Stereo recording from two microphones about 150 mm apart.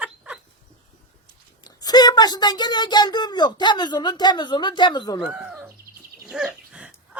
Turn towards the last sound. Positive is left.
turn(degrees=-5)  # may be behind; listen again after turning